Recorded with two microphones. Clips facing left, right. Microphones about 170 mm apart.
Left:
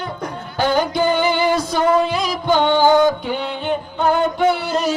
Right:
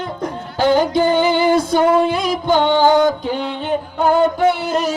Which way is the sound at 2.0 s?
55° right (ahead or behind).